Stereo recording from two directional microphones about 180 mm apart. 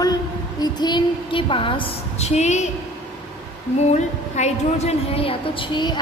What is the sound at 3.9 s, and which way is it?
A woman's voice, 40° left (ahead or behind).